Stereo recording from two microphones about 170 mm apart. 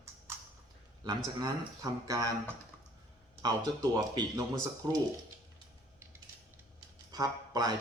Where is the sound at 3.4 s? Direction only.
25° right (ahead or behind).